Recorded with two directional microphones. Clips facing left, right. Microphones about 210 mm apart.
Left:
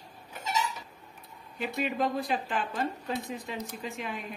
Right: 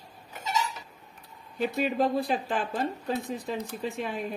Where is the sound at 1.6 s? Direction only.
35° right (ahead or behind).